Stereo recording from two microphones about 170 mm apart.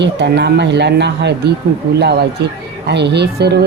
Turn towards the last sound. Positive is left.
turn(degrees=-75)  # may be behind; listen again after turning